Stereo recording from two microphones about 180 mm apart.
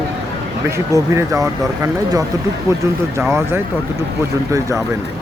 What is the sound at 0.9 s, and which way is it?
Speech, 15° right (ahead or behind).